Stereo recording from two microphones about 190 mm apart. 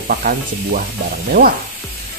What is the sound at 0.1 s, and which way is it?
Speech, 50° right (ahead or behind).